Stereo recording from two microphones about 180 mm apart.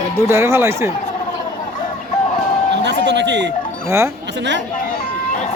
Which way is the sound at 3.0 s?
75° right (ahead or behind).